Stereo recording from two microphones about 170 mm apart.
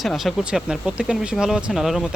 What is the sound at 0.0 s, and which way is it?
Speech, centre (ahead or behind).